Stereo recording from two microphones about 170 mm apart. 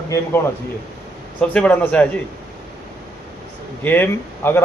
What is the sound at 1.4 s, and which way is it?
Speech, 10° left (ahead or behind).